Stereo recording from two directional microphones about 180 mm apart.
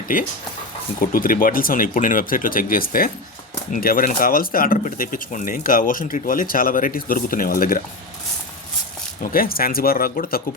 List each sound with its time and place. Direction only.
0.1 s speech: 50° left (ahead or behind)
9.2 s speech: 55° left (ahead or behind)